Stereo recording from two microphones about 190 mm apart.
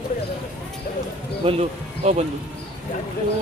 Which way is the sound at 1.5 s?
30° right (ahead or behind).